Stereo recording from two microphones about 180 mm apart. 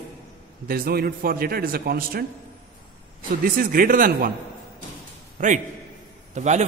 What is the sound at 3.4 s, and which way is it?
Speech, 50° right (ahead or behind).